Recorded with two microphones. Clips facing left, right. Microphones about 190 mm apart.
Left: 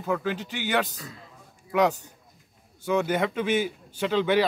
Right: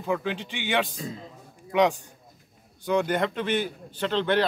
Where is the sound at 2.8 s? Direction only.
5° left (ahead or behind).